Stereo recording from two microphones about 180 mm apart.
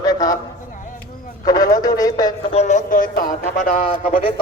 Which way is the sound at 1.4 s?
20° left (ahead or behind).